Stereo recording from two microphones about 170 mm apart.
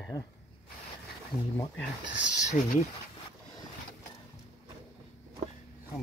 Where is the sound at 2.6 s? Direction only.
45° left (ahead or behind).